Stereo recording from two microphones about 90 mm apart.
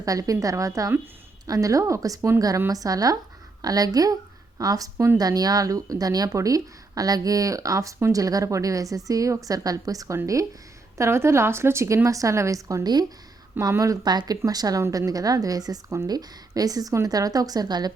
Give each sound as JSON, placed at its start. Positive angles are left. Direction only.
{"t": 0.0, "sound": "speech", "side_deg": -40}
{"t": 10.9, "sound": "speech", "side_deg": -30}
{"t": 13.6, "sound": "a woman's voice", "side_deg": -35}